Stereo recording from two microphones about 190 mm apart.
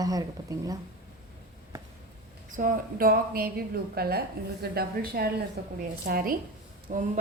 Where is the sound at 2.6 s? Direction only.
45° right (ahead or behind).